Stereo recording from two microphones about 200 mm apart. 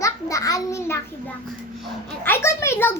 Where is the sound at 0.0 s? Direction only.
15° left (ahead or behind).